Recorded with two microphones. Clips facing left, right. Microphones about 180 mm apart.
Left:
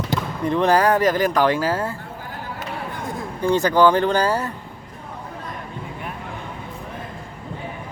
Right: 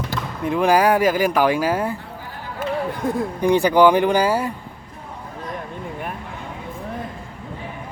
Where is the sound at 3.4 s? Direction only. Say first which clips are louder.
Right 2 dB; 15° right (ahead or behind).